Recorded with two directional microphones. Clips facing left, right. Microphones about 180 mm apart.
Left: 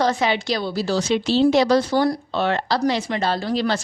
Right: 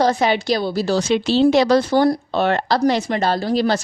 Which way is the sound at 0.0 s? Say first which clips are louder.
Right 3 dB; 40° right (ahead or behind).